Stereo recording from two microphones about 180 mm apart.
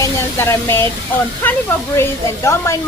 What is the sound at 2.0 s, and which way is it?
Speech, 15° left (ahead or behind).